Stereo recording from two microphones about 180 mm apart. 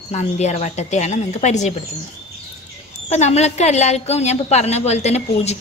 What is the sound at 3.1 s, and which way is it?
A woman's voice, 40° left (ahead or behind).